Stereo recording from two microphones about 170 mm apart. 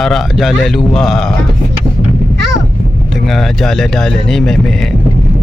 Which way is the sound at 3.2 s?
Centre (ahead or behind).